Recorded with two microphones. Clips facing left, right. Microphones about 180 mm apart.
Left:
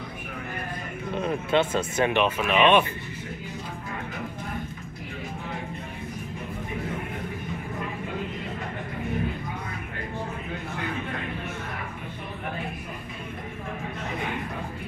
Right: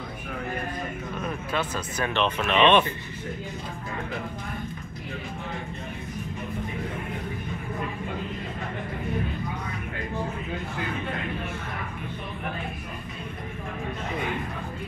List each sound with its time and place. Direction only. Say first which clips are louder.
1.1 s speech: left 7 dB; 25° left (ahead or behind)
2.1 s speech: right 2 dB; 10° left (ahead or behind)